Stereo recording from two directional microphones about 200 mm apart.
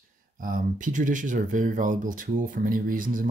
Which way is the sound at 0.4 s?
45° right (ahead or behind).